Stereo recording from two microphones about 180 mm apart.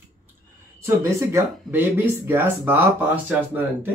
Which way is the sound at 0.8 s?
15° right (ahead or behind).